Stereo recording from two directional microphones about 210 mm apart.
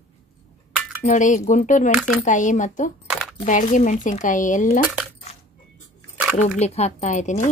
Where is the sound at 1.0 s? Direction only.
35° left (ahead or behind).